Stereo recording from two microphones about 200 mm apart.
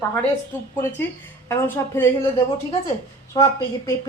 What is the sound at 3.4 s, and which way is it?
Speech, 20° left (ahead or behind).